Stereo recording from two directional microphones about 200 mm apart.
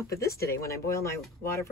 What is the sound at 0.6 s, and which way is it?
Speech, 15° left (ahead or behind).